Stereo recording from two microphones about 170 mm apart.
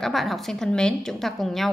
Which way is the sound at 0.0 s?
Centre (ahead or behind).